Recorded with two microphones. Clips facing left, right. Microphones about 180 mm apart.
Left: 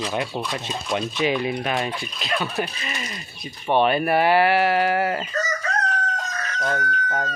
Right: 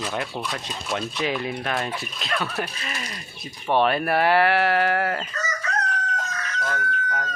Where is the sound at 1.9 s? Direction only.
Centre (ahead or behind).